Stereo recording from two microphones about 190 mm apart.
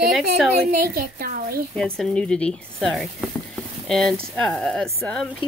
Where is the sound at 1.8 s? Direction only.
Centre (ahead or behind).